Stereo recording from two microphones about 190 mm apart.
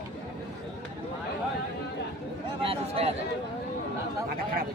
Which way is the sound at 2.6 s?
30° right (ahead or behind).